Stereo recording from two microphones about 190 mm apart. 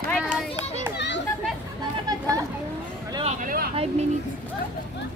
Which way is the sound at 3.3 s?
50° right (ahead or behind).